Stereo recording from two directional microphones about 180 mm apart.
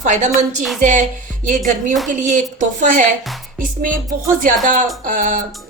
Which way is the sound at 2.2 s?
45° right (ahead or behind).